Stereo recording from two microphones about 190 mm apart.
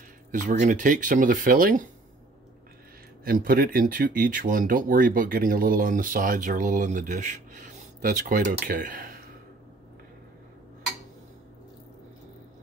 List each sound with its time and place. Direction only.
0.3 s speech: 40° right (ahead or behind)
3.3 s speech: 50° right (ahead or behind)